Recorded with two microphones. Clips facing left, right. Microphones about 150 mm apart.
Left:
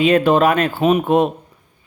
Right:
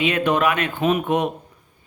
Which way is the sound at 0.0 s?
35° left (ahead or behind).